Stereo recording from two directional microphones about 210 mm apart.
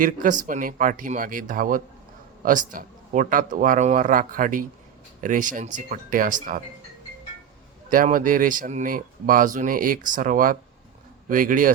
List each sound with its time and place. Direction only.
0.0 s speech: 40° right (ahead or behind)
7.9 s speech: 40° right (ahead or behind)